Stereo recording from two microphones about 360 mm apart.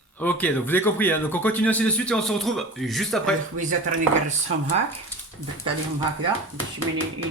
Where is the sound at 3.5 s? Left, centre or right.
Right.